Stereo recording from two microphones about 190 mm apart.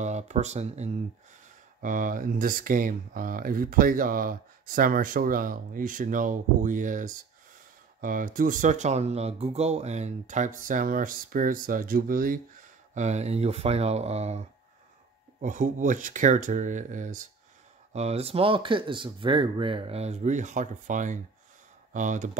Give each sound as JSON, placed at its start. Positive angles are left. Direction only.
{"t": 0.0, "sound": "speech", "side_deg": -35}
{"t": 15.4, "sound": "speech", "side_deg": -40}